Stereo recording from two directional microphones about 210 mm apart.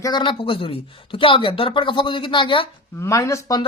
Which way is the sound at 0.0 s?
20° left (ahead or behind).